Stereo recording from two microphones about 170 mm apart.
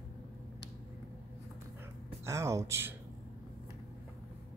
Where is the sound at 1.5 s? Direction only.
15° right (ahead or behind).